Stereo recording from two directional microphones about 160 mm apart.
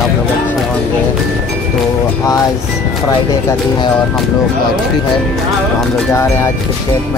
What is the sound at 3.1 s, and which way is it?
Speech, 30° left (ahead or behind).